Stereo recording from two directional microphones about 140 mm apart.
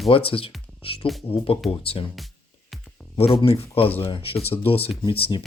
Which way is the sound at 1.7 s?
40° left (ahead or behind).